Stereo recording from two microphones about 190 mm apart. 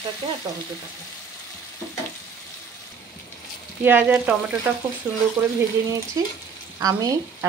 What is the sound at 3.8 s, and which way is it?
Speech, 10° right (ahead or behind).